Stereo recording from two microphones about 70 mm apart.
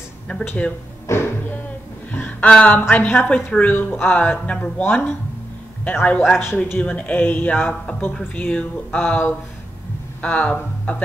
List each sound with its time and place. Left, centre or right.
0.3 s speech: centre
1.0 s music: left
2.1 s a sound: left
2.5 s speech: centre
6.4 s a man's voice: left
6.8 s speech: centre